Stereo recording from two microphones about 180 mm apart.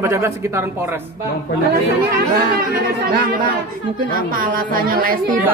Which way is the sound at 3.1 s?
50° right (ahead or behind).